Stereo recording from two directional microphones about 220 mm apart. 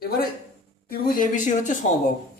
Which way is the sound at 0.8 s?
35° left (ahead or behind).